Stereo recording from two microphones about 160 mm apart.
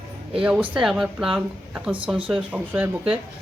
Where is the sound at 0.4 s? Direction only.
5° right (ahead or behind).